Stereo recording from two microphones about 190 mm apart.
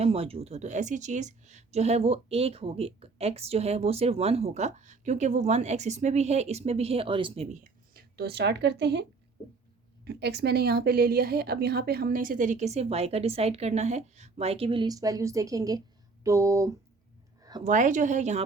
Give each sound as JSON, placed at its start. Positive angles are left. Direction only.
{"t": 0.0, "sound": "speech", "side_deg": -30}
{"t": 7.5, "sound": "speech", "side_deg": -50}
{"t": 17.6, "sound": "speech", "side_deg": -40}